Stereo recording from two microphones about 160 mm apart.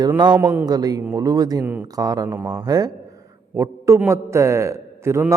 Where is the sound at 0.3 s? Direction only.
15° right (ahead or behind).